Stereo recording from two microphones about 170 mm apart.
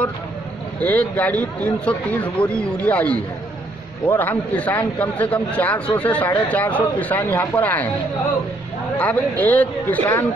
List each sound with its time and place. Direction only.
0.7 s a man's voice: 10° left (ahead or behind)
8.9 s a man's voice: 10° left (ahead or behind)